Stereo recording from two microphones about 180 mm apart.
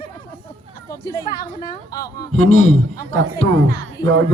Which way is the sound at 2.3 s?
40° left (ahead or behind).